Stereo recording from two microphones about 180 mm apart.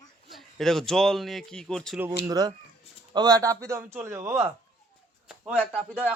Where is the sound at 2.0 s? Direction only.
10° right (ahead or behind).